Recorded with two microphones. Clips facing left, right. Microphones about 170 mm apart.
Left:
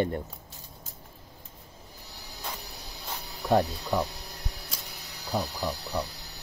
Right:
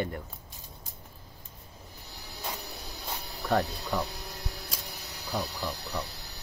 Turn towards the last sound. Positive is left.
turn(degrees=15)  # may be behind; listen again after turning